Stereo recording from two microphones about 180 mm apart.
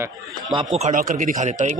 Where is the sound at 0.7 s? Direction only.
45° right (ahead or behind).